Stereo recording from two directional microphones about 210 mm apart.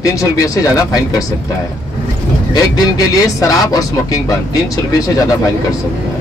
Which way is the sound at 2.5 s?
20° left (ahead or behind).